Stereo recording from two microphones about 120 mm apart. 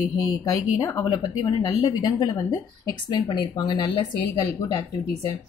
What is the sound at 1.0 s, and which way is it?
A woman's voice, 35° left (ahead or behind).